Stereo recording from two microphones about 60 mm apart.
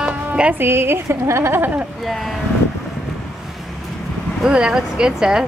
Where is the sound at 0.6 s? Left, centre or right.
Right.